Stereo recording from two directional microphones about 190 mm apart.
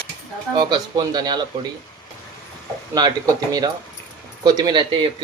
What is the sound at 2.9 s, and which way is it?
Speech, 20° right (ahead or behind).